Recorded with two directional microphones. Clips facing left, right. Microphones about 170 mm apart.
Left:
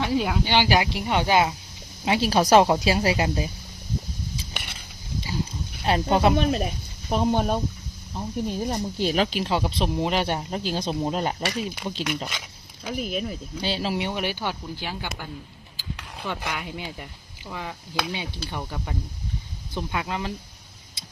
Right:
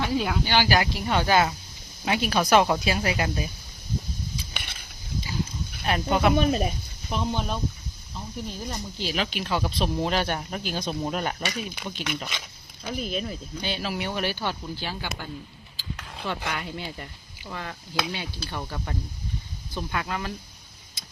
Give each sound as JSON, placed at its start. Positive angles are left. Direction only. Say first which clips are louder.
{"t": 0.2, "sound": "speech", "louder": "left 2 dB", "side_deg": 20}
{"t": 5.8, "sound": "speech", "louder": "left 3 dB", "side_deg": 30}
{"t": 6.3, "sound": "speech", "louder": "even", "side_deg": 0}
{"t": 7.1, "sound": "speech", "louder": "left 6 dB", "side_deg": 50}
{"t": 12.8, "sound": "speech", "louder": "left 2 dB", "side_deg": 10}
{"t": 13.6, "sound": "speech", "louder": "left 4 dB", "side_deg": 30}
{"t": 15.8, "sound": "a sound", "louder": "even", "side_deg": 10}
{"t": 17.5, "sound": "speech", "louder": "left 1 dB", "side_deg": 10}